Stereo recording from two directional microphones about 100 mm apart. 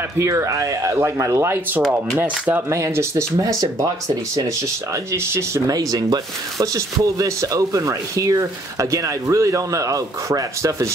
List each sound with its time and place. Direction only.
0.2 s speech: 30° right (ahead or behind)
2.7 s speech: 30° right (ahead or behind)
5.1 s speech: 25° right (ahead or behind)
5.7 s speech: 40° right (ahead or behind)